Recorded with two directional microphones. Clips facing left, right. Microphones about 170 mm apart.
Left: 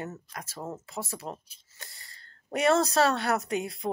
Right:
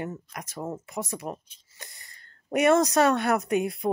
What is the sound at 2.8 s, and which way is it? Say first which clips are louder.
Speech: right 3 dB; 20° right (ahead or behind).